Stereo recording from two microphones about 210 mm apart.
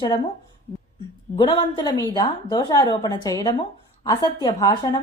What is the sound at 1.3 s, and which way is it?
A woman's voice, 20° left (ahead or behind).